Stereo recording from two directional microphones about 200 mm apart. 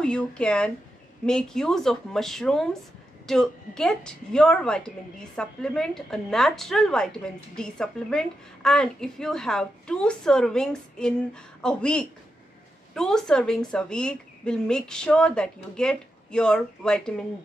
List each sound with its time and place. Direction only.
0.0 s a woman's voice: 5° left (ahead or behind)